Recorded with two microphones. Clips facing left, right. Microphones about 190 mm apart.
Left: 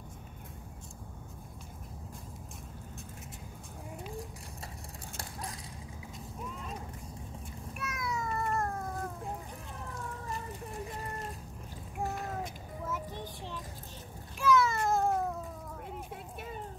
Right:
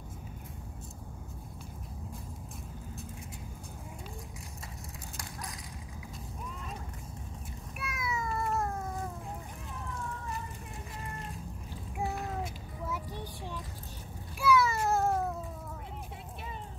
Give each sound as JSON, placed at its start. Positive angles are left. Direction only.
{"t": 7.8, "sound": "a sound", "side_deg": -5}
{"t": 12.9, "sound": "child singing", "side_deg": -10}
{"t": 14.4, "sound": "cat", "side_deg": -10}
{"t": 16.3, "sound": "music", "side_deg": 50}